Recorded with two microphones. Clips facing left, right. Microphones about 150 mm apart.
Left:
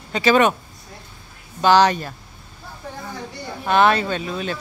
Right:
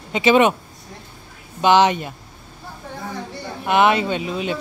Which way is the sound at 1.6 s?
20° right (ahead or behind).